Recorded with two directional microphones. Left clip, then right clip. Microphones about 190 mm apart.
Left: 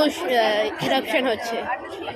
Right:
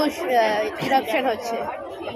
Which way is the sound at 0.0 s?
15° left (ahead or behind).